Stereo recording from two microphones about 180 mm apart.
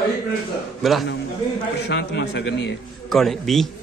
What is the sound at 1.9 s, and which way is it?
Speech, 75° left (ahead or behind).